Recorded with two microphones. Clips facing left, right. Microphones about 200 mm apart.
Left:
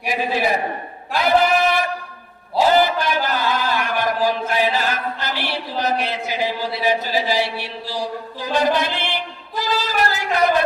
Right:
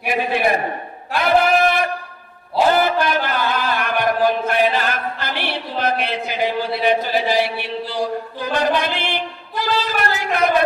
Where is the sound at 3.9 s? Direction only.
60° right (ahead or behind).